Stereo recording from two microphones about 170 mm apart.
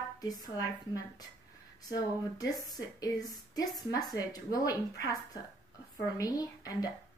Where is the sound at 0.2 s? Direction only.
25° left (ahead or behind).